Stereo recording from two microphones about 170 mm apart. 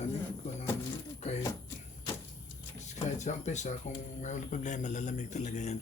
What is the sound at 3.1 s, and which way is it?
Speech, 45° left (ahead or behind).